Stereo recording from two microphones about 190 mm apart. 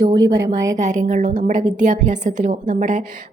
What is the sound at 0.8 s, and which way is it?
A woman's voice, 40° right (ahead or behind).